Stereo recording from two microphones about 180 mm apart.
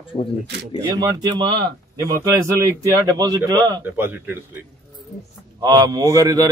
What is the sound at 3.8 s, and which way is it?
Speech, 10° right (ahead or behind).